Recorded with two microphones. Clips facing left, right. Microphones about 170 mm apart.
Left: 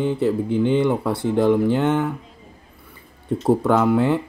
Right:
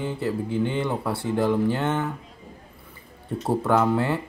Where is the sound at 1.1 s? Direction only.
20° left (ahead or behind).